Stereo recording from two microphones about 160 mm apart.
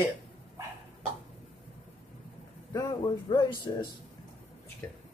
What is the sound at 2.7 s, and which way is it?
Speech, 20° left (ahead or behind).